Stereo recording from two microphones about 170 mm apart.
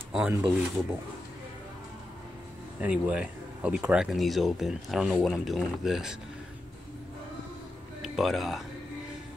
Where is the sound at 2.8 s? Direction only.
5° right (ahead or behind).